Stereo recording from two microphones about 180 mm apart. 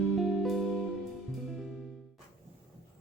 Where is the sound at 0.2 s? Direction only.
Centre (ahead or behind).